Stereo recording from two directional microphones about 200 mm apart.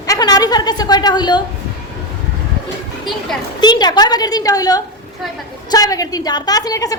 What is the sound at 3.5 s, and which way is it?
A woman's voice, 20° left (ahead or behind).